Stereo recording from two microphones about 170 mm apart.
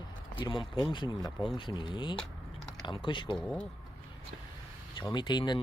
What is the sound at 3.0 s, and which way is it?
Speech, 30° left (ahead or behind).